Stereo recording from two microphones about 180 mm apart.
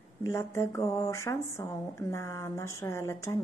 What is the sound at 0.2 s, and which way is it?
A woman's voice, 15° left (ahead or behind).